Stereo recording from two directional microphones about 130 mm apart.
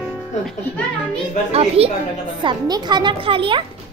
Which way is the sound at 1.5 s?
50° right (ahead or behind).